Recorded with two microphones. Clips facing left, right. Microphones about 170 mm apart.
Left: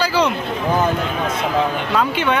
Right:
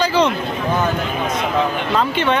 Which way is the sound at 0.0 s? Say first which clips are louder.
Right 2 dB; 10° left (ahead or behind).